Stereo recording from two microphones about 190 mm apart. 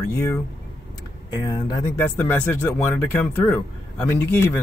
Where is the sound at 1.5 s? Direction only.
20° left (ahead or behind).